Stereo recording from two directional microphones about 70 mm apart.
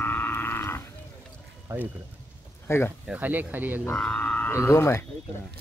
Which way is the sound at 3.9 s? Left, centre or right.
Centre.